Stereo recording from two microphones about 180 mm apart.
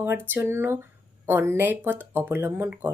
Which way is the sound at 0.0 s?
10° right (ahead or behind).